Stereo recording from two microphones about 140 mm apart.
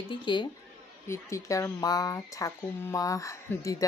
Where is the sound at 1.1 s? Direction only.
20° left (ahead or behind).